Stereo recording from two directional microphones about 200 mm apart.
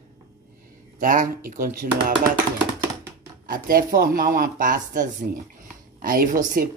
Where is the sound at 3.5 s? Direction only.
45° right (ahead or behind).